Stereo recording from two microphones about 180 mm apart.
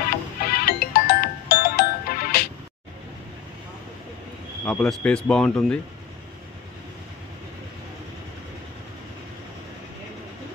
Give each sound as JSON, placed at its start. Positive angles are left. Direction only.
{"t": 0.5, "sound": "music", "side_deg": 55}
{"t": 4.6, "sound": "speech", "side_deg": 5}